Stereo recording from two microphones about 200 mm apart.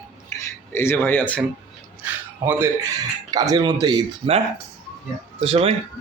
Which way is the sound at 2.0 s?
10° right (ahead or behind).